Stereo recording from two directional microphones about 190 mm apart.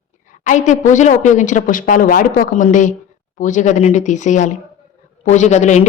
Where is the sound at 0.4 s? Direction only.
40° left (ahead or behind).